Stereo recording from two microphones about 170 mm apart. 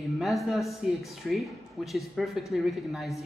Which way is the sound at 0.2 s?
Centre (ahead or behind).